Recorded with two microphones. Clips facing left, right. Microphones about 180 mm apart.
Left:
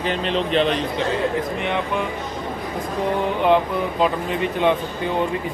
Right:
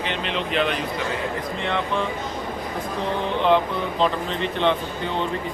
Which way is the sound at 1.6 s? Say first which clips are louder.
Left 1 dB; 15° left (ahead or behind).